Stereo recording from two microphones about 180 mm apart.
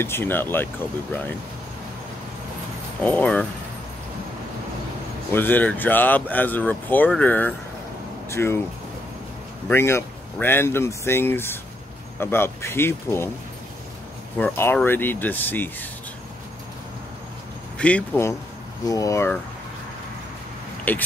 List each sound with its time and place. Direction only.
0.0 s speech: 10° left (ahead or behind)
3.0 s speech: 10° left (ahead or behind)
5.3 s speech: 10° left (ahead or behind)
9.7 s speech: 15° left (ahead or behind)
14.4 s speech: 10° left (ahead or behind)
17.7 s speech: 5° left (ahead or behind)
20.9 s speech: 10° left (ahead or behind)